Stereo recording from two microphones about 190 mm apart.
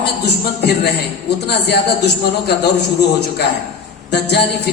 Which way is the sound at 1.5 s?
60° left (ahead or behind).